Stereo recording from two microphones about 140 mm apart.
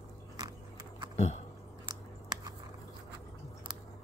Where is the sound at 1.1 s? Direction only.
50° left (ahead or behind).